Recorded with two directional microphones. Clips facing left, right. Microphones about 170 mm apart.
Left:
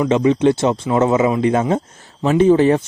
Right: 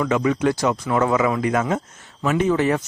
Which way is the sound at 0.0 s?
25° left (ahead or behind).